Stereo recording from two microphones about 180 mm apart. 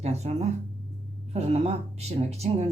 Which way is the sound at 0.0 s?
35° right (ahead or behind).